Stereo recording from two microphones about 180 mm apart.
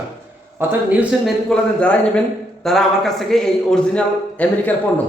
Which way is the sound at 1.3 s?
5° left (ahead or behind).